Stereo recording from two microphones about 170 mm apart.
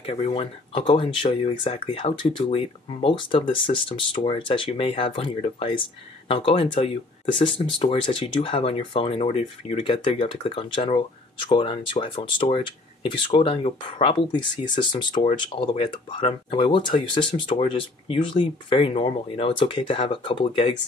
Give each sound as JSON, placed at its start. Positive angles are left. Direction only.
{"t": 0.0, "sound": "speech", "side_deg": 35}